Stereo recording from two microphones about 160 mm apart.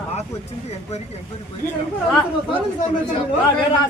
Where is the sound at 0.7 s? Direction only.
45° left (ahead or behind).